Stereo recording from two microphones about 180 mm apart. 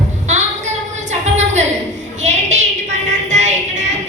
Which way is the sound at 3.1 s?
40° right (ahead or behind).